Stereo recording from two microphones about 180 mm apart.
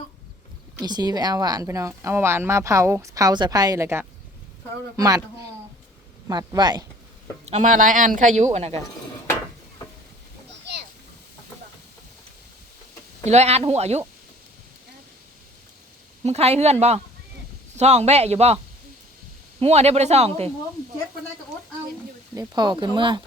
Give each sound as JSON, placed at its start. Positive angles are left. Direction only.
{"t": 0.8, "sound": "speech", "side_deg": -20}
{"t": 6.2, "sound": "speech", "side_deg": -20}
{"t": 7.4, "sound": "speech", "side_deg": -40}
{"t": 13.2, "sound": "speech", "side_deg": -35}
{"t": 16.2, "sound": "speech", "side_deg": -35}
{"t": 17.7, "sound": "speech", "side_deg": -40}
{"t": 22.4, "sound": "speech", "side_deg": -25}